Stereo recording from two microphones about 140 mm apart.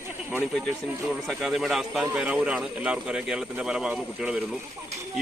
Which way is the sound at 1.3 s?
Centre (ahead or behind).